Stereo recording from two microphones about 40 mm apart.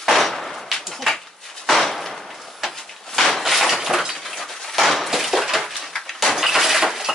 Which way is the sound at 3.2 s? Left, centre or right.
Centre.